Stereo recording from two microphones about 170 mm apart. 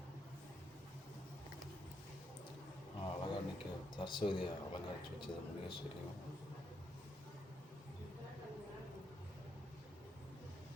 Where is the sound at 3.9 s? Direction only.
30° left (ahead or behind).